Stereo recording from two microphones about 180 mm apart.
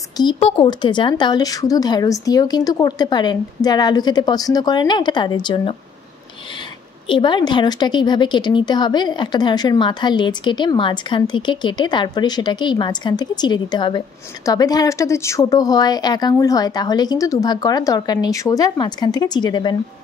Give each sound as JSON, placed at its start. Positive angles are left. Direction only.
{"t": 0.2, "sound": "a woman's voice", "side_deg": 30}
{"t": 7.1, "sound": "a woman's voice", "side_deg": 25}